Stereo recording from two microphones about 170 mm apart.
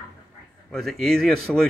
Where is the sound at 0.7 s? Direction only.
Centre (ahead or behind).